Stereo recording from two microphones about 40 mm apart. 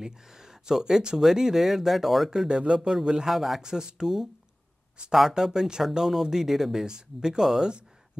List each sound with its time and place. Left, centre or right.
0.0 s speech: centre
2.4 s speech: right; by 3.6 s centre
3.6 s speech: centre
5.3 s speech: centre